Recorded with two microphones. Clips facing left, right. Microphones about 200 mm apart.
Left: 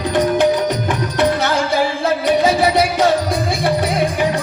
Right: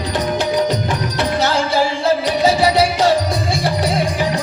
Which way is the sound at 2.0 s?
55° left (ahead or behind).